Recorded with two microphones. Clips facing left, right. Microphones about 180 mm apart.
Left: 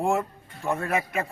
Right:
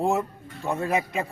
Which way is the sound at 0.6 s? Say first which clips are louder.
Right 1 dB; 20° right (ahead or behind).